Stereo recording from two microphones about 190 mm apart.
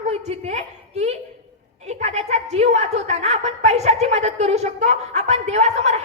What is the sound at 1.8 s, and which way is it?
A woman's voice, 35° right (ahead or behind).